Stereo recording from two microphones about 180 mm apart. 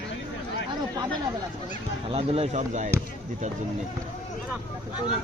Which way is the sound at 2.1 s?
35° right (ahead or behind).